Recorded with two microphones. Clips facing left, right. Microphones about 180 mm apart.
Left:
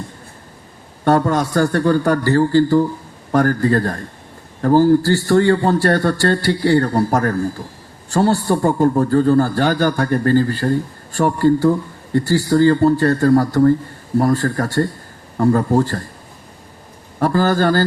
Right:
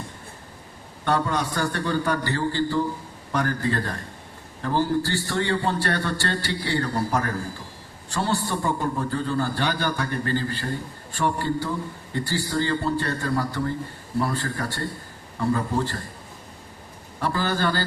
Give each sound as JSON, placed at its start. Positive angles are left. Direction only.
{"t": 1.0, "sound": "a man's voice", "side_deg": 45}
{"t": 17.2, "sound": "a man's voice", "side_deg": 45}